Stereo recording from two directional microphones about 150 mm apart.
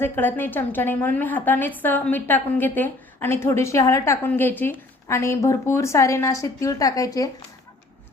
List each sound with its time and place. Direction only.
0.0 s a woman's voice: 15° left (ahead or behind)